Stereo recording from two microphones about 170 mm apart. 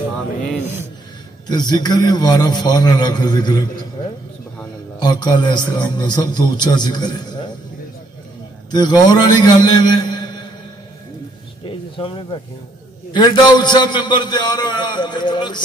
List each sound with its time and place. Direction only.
1.5 s a man's voice: 25° left (ahead or behind)
4.9 s a man's voice: 25° left (ahead or behind)
8.6 s a man's voice: 25° left (ahead or behind)
11.6 s a sound: 30° left (ahead or behind)
13.1 s a man's voice: 25° left (ahead or behind)